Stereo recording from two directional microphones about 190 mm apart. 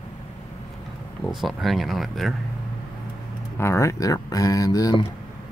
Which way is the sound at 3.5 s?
15° left (ahead or behind).